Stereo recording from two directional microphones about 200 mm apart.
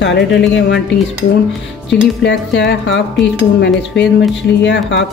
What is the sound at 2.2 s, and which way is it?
Speech, 60° left (ahead or behind).